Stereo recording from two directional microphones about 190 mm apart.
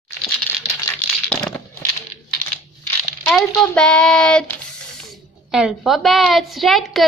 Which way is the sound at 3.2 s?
5° left (ahead or behind).